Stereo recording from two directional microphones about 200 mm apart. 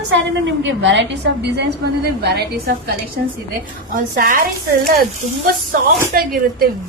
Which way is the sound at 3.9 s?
40° right (ahead or behind).